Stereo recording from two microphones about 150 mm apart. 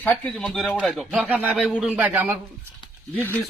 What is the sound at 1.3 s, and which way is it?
A man's voice, 10° right (ahead or behind).